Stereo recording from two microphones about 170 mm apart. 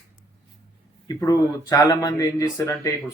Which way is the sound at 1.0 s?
20° left (ahead or behind).